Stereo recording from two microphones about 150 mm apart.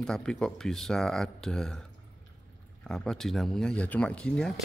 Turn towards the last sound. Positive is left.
turn(degrees=5)  # may be behind; listen again after turning